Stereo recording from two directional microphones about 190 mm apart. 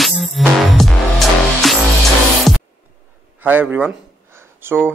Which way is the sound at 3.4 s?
10° right (ahead or behind).